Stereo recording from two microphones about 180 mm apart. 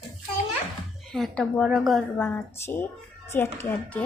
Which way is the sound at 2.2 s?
10° left (ahead or behind).